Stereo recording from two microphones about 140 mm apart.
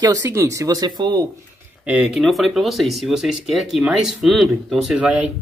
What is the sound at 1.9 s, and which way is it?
Speech, 5° right (ahead or behind).